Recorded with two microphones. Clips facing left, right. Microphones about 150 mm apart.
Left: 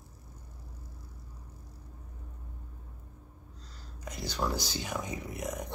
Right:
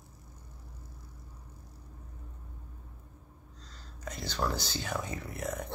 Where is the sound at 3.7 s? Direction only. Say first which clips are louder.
Right 1 dB; 10° left (ahead or behind).